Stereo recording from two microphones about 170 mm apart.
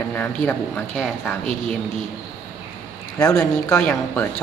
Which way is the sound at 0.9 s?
Centre (ahead or behind).